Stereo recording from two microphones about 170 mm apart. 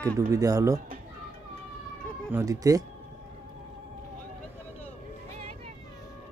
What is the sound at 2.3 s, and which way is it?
Speech, 20° right (ahead or behind).